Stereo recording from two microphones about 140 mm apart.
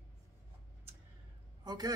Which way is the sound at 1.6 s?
30° right (ahead or behind).